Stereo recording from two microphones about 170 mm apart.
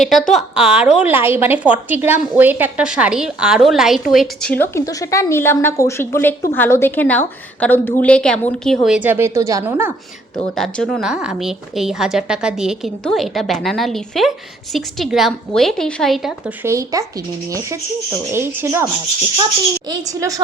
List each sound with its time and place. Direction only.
0.0 s a woman's voice: centre (ahead or behind)
4.5 s a woman's voice: 15° left (ahead or behind); by 9.9 s 10° right (ahead or behind)
10.6 s a woman's voice: 5° left (ahead or behind)
16.6 s a woman's voice: 20° right (ahead or behind)
18.3 s a woman's voice: 15° right (ahead or behind)
19.9 s a woman's voice: 20° right (ahead or behind)